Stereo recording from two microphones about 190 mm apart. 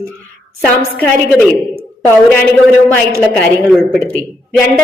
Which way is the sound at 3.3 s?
5° left (ahead or behind).